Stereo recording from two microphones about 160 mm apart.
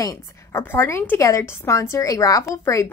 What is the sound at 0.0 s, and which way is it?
Speech, 20° left (ahead or behind).